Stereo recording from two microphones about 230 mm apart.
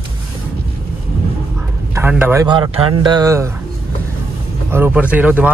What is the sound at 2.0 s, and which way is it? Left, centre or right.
Speech, centre.